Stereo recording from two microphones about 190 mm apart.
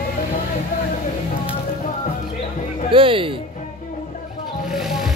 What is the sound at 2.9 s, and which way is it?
Music, 30° right (ahead or behind).